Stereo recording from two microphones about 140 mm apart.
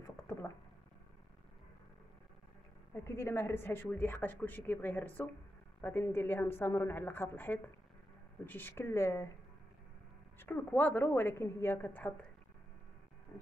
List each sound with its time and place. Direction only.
0.0 s a sound: 20° left (ahead or behind)
2.9 s speech: 20° left (ahead or behind)
10.4 s speech: 15° left (ahead or behind)